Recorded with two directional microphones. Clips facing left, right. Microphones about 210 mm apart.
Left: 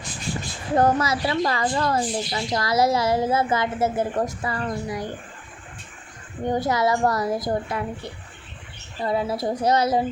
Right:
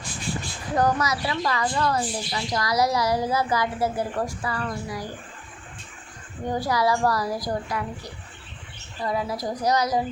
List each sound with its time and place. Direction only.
0.7 s a woman's voice: 25° left (ahead or behind)
6.4 s a woman's voice: 20° left (ahead or behind)